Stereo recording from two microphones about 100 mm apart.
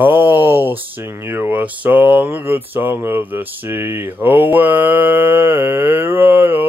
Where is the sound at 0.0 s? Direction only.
20° right (ahead or behind).